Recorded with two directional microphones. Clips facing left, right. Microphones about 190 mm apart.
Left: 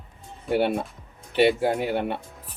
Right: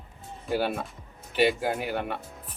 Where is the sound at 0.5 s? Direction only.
25° left (ahead or behind).